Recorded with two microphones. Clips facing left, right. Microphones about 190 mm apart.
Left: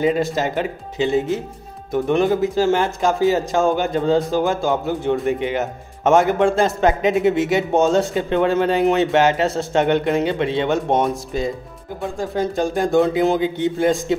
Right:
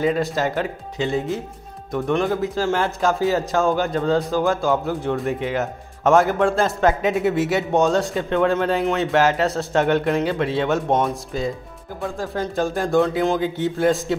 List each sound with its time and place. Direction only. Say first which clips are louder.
0.2 s a man's voice: left 1 dB; centre (ahead or behind)
2.7 s speech: left 2 dB; 20° left (ahead or behind)
3.1 s a man's voice: left 3 dB; centre (ahead or behind)